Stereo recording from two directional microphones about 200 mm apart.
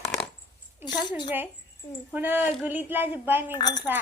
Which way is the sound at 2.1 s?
10° right (ahead or behind).